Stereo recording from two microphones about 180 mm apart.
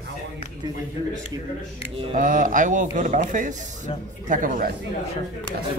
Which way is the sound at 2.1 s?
45° right (ahead or behind).